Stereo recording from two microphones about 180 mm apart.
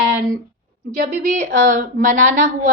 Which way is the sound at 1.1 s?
40° right (ahead or behind).